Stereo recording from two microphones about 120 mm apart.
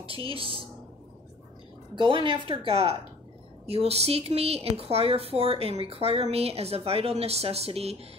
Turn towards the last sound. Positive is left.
turn(degrees=-60)  # may be behind; listen again after turning